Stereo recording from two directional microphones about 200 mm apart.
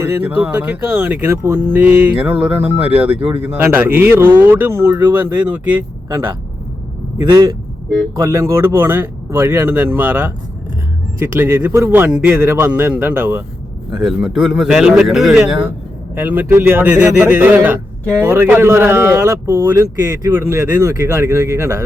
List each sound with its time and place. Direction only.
0.0 s a man's voice: 10° right (ahead or behind)
11.3 s a man's voice: 10° right (ahead or behind)